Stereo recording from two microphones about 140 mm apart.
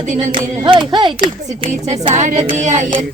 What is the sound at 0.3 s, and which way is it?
Hands, 35° right (ahead or behind).